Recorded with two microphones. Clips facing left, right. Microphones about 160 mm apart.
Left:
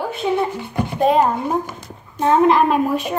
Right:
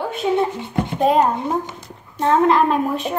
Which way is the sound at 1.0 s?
Centre (ahead or behind).